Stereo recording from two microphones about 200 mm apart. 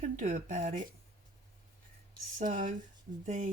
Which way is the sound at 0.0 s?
40° right (ahead or behind).